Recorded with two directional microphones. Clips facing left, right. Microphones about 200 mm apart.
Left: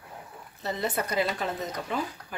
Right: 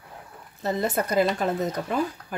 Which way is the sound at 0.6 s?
50° right (ahead or behind).